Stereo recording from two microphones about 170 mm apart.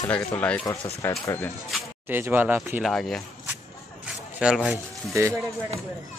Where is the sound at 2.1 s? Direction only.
10° right (ahead or behind).